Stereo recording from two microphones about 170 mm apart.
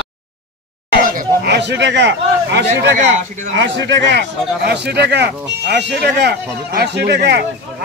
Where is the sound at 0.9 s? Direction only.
60° right (ahead or behind).